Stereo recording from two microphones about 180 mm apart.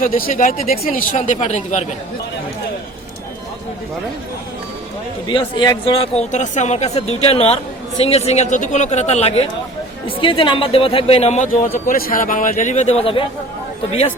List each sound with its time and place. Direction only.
0.2 s speech: 50° left (ahead or behind)
0.7 s speech: 50° left (ahead or behind)
5.3 s speech: 25° left (ahead or behind)